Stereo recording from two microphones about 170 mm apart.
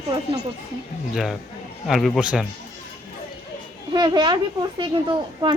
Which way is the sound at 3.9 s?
25° right (ahead or behind).